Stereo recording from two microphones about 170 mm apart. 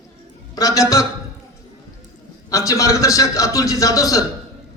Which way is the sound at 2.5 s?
20° left (ahead or behind).